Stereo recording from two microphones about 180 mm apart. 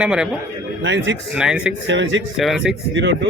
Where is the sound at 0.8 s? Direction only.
90° right.